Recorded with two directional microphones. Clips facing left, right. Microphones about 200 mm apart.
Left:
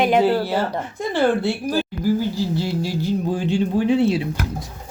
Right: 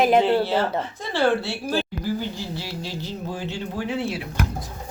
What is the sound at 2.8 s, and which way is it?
A child's voice, 15° left (ahead or behind).